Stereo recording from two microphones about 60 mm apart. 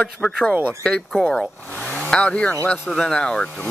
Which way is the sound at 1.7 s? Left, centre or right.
Centre.